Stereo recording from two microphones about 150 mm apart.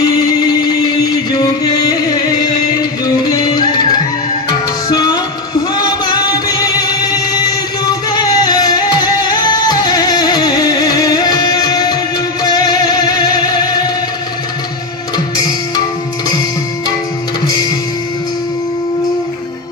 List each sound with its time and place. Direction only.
0.0 s music: 25° left (ahead or behind)
4.9 s music: 25° left (ahead or behind)
15.1 s music: 25° left (ahead or behind)